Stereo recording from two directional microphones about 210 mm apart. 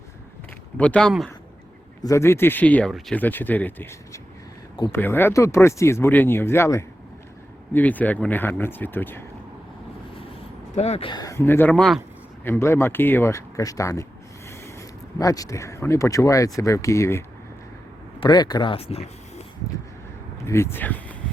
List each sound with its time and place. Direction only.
0.8 s speech: 5° left (ahead or behind)
2.0 s speech: 10° left (ahead or behind)
10.8 s speech: 30° left (ahead or behind); by 12.0 s centre (ahead or behind)
12.5 s speech: 10° left (ahead or behind); by 19.0 s 30° left (ahead or behind)
20.4 s speech: 10° left (ahead or behind)